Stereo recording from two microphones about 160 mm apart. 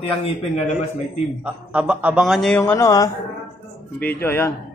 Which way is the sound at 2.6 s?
20° left (ahead or behind).